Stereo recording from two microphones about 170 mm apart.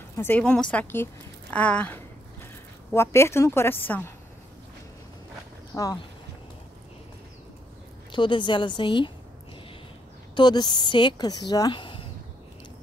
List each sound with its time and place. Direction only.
0.1 s a woman's voice: 10° left (ahead or behind)
5.7 s speech: 5° left (ahead or behind)
8.1 s a woman's voice: 30° left (ahead or behind)
10.3 s a woman's voice: 25° left (ahead or behind)